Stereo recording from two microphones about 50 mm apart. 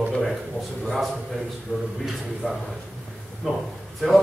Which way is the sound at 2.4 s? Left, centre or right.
Left.